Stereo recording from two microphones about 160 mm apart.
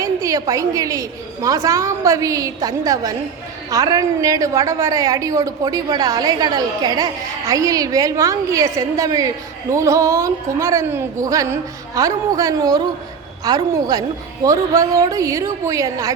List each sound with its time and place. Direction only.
0.0 s a woman's voice: 20° right (ahead or behind)